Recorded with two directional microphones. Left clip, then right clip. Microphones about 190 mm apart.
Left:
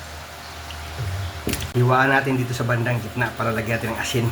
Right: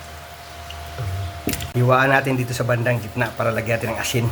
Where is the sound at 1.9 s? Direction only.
25° right (ahead or behind).